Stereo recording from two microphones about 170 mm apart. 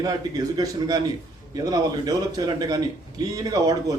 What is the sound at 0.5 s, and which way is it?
A man's voice, 20° right (ahead or behind).